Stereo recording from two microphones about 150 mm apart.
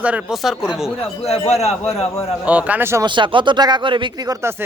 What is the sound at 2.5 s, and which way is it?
Speech, 10° right (ahead or behind).